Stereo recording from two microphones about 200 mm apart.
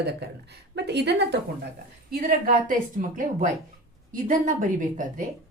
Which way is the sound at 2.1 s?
45° right (ahead or behind).